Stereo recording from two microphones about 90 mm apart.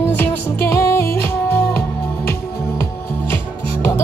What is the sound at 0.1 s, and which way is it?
Music, 20° left (ahead or behind).